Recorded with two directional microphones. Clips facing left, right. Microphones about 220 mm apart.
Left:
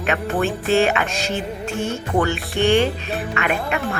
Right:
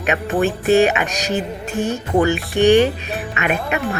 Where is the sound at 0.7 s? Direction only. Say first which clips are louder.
Right 4 dB; 15° right (ahead or behind).